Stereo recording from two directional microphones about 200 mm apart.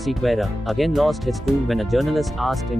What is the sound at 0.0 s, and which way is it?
Speech, centre (ahead or behind).